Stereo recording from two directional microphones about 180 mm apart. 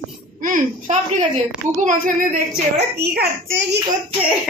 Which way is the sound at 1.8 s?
50° right (ahead or behind).